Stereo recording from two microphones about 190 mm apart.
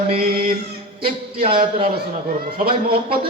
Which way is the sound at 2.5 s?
50° right (ahead or behind).